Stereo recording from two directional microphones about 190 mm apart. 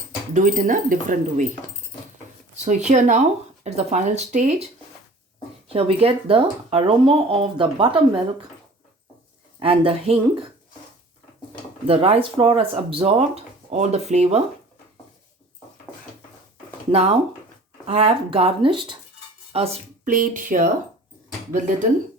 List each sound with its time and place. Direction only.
0.3 s speech: 45° right (ahead or behind)
2.6 s speech: 40° right (ahead or behind)
5.6 s speech: 30° right (ahead or behind)
9.6 s speech: 30° right (ahead or behind)
11.9 s speech: 30° right (ahead or behind)
16.9 s speech: 30° right (ahead or behind)
20.1 s speech: 45° right (ahead or behind)